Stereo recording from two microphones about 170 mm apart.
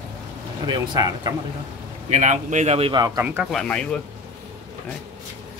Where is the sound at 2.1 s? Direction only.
45° right (ahead or behind).